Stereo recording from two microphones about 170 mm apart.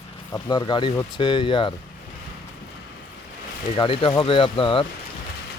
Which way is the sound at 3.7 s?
30° left (ahead or behind).